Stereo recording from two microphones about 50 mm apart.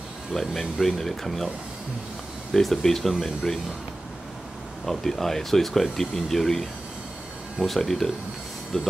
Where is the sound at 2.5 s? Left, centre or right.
Centre.